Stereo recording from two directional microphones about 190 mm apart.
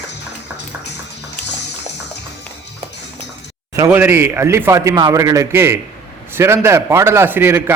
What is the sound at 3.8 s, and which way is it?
A man's voice, 10° right (ahead or behind).